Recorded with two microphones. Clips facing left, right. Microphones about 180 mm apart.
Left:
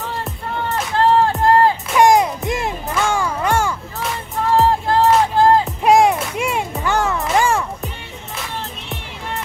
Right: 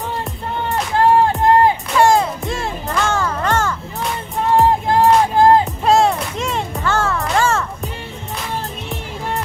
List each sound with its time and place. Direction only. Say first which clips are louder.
0.9 s music: right 1 dB; 15° right (ahead or behind)
2.0 s music: left 2 dB; 15° left (ahead or behind)
2.9 s a sound: right 1 dB; 10° left (ahead or behind)
4.6 s music: right 1 dB; 15° right (ahead or behind)
5.9 s music: left 2 dB; 15° left (ahead or behind)